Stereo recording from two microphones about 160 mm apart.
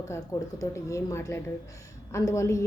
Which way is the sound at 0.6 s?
20° left (ahead or behind).